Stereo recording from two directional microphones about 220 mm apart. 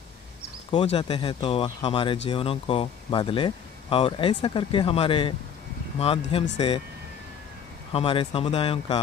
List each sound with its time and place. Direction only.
0.7 s speech: 25° left (ahead or behind)
7.9 s speech: 25° left (ahead or behind)